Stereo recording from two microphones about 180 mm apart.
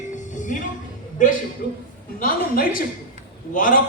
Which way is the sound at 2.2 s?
50° left (ahead or behind).